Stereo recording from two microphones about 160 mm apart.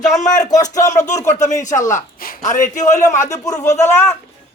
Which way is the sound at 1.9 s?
55° left (ahead or behind).